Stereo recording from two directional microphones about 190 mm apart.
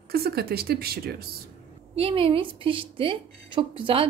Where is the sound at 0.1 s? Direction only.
55° right (ahead or behind).